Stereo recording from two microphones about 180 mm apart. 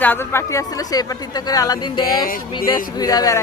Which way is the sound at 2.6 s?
20° left (ahead or behind).